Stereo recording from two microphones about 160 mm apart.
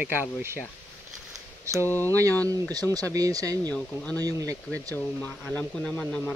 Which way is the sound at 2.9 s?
20° right (ahead or behind).